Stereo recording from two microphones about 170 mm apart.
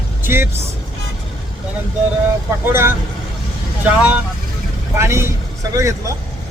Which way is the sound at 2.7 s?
15° right (ahead or behind).